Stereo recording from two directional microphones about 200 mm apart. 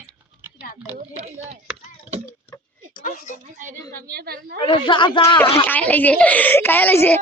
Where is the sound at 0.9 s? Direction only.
35° right (ahead or behind).